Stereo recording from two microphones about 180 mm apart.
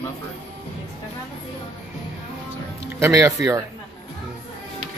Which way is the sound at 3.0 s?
15° right (ahead or behind).